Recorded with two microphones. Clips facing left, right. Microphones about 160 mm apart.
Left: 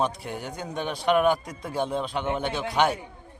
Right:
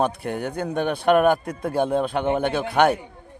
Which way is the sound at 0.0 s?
55° right (ahead or behind).